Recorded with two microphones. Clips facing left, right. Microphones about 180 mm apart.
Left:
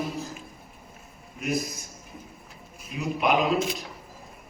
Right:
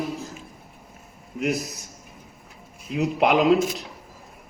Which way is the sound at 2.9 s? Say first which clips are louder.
Right 5 dB; 80° right.